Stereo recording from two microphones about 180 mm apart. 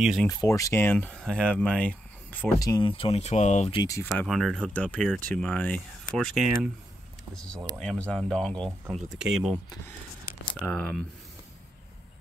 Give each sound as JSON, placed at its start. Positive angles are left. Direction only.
{"t": 0.0, "sound": "speech", "side_deg": 0}
{"t": 0.3, "sound": "speech", "side_deg": 15}
{"t": 0.9, "sound": "speech", "side_deg": 5}
{"t": 2.6, "sound": "speech", "side_deg": 20}
{"t": 3.0, "sound": "speech", "side_deg": 35}
{"t": 3.7, "sound": "speech", "side_deg": 20}
{"t": 4.0, "sound": "speech", "side_deg": 5}
{"t": 7.8, "sound": "speech", "side_deg": 5}
{"t": 10.6, "sound": "speech", "side_deg": 10}